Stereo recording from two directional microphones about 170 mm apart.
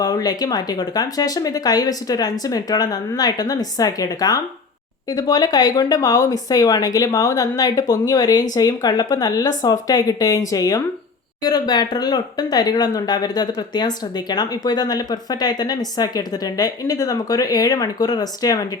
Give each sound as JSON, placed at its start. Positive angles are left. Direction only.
{"t": 0.0, "sound": "speech", "side_deg": 20}